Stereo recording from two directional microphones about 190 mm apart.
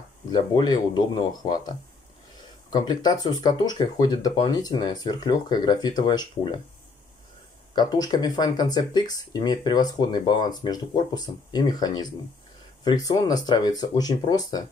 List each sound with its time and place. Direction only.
0.3 s speech: 25° left (ahead or behind)
2.7 s speech: 20° left (ahead or behind)
7.7 s speech: 20° left (ahead or behind)